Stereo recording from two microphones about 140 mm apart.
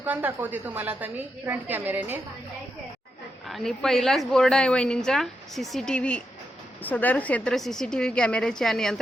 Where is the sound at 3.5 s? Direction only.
Centre (ahead or behind).